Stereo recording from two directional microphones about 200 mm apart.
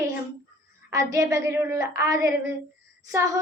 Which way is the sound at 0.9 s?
15° right (ahead or behind).